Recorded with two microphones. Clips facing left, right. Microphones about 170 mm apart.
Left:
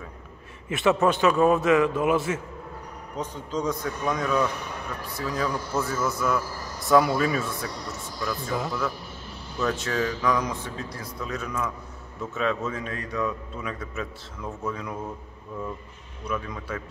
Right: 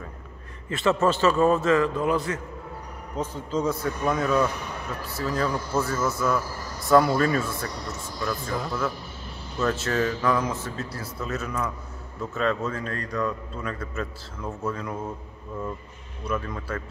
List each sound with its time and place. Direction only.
0.7 s a man's voice: 20° left (ahead or behind)
3.2 s a man's voice: 5° right (ahead or behind)
16.3 s a man's voice: centre (ahead or behind)